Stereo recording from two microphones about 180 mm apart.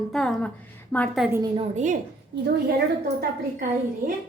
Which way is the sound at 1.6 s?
40° right (ahead or behind).